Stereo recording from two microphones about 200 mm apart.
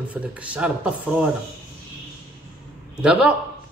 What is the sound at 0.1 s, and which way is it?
Speech, 5° right (ahead or behind).